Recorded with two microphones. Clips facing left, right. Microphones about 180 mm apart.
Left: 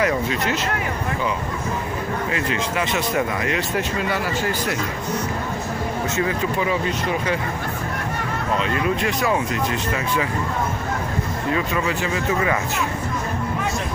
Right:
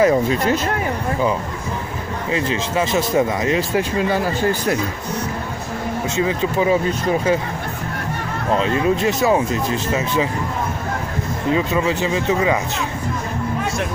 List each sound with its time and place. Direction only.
0.0 s speech: 35° right (ahead or behind)
2.3 s speech: 30° right (ahead or behind)
6.6 s speech: 30° right (ahead or behind)
8.5 s speech: 30° right (ahead or behind)
11.5 s speech: 25° right (ahead or behind)